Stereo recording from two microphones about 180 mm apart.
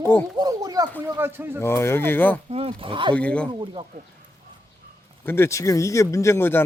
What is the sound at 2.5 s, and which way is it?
Speech, 30° right (ahead or behind).